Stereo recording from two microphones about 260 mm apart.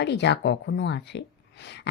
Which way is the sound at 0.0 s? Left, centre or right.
Left.